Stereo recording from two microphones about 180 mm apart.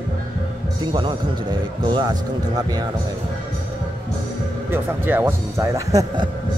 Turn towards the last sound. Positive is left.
turn(degrees=-20)  # may be behind; listen again after turning